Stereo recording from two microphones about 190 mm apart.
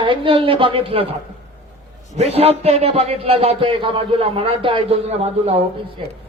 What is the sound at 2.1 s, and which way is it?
A man's voice, 35° right (ahead or behind).